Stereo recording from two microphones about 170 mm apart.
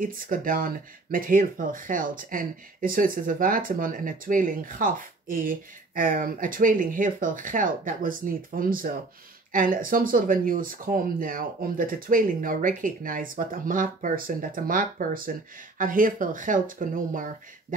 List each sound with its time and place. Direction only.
0.0 s speech: 55° right (ahead or behind)